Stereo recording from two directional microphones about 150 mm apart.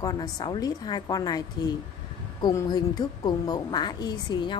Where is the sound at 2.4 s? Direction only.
25° left (ahead or behind).